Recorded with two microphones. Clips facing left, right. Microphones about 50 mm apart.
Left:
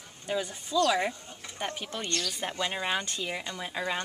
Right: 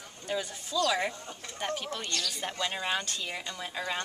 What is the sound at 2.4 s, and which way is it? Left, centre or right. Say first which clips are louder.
A woman's voice: left 2 dB; centre.